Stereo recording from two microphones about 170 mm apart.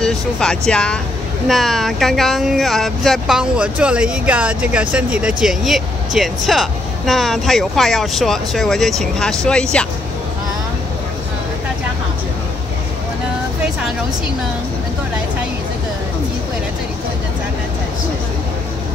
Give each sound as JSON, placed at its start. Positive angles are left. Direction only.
{"t": 0.0, "sound": "speech", "side_deg": 5}